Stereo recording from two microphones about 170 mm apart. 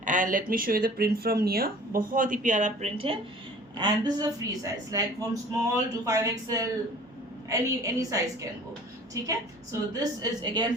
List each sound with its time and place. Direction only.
0.0 s speech: 50° right (ahead or behind)
3.8 s a woman's voice: 25° right (ahead or behind)
9.9 s a woman's voice: 25° right (ahead or behind)